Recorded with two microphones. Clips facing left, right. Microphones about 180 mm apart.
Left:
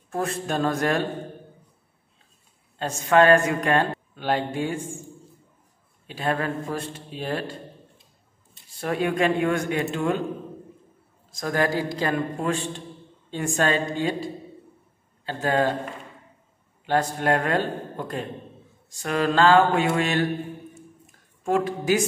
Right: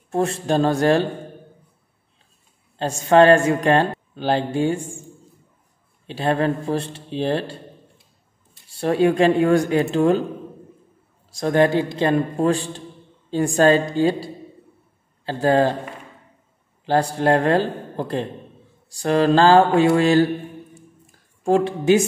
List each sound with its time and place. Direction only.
0.1 s speech: 25° right (ahead or behind)
2.8 s speech: 30° right (ahead or behind)
6.0 s speech: 30° right (ahead or behind)
8.6 s speech: 30° right (ahead or behind)
11.3 s speech: 25° right (ahead or behind)
16.8 s speech: 30° right (ahead or behind)
21.5 s speech: 30° right (ahead or behind)